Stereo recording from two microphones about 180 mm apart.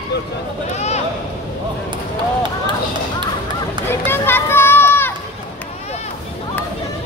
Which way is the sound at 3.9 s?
10° left (ahead or behind).